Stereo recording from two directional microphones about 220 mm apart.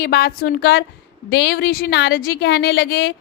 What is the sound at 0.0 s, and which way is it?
A woman's voice, 45° left (ahead or behind).